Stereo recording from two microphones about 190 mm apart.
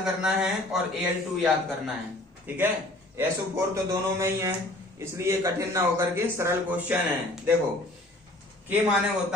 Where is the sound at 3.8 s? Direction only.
15° right (ahead or behind).